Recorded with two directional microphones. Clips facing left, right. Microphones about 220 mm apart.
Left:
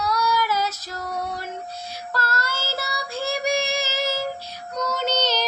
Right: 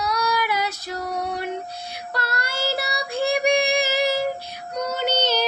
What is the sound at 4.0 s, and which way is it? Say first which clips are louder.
Child singing: right 4 dB; 15° right (ahead or behind).